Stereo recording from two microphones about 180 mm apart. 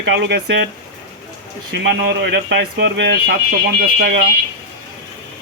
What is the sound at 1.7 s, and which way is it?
Speech, 75° right (ahead or behind).